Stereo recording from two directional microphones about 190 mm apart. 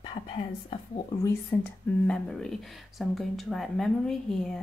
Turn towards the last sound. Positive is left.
turn(degrees=5)  # may be behind; listen again after turning